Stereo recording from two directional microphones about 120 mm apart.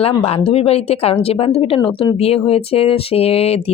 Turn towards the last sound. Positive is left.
turn(degrees=60)  # may be behind; listen again after turning